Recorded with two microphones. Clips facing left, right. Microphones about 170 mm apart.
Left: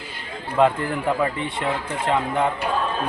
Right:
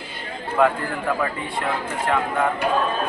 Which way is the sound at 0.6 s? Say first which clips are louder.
Left 1 dB; 25° left (ahead or behind).